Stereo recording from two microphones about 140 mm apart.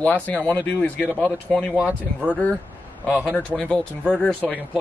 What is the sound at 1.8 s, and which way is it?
Speech, 10° right (ahead or behind).